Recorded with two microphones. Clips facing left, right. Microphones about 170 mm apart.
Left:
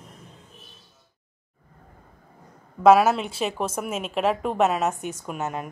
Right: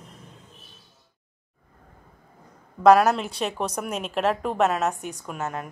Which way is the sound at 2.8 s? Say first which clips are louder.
Even; centre (ahead or behind).